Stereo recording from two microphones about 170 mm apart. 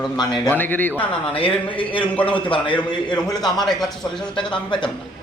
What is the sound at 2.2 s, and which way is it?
A man's voice, 30° left (ahead or behind).